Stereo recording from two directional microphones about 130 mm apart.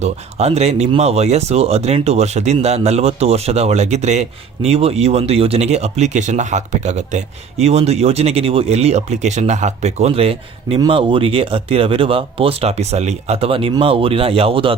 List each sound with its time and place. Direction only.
0.0 s speech: 55° right (ahead or behind)